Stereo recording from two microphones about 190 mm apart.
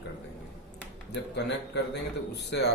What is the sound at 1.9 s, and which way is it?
Speech, 60° left (ahead or behind).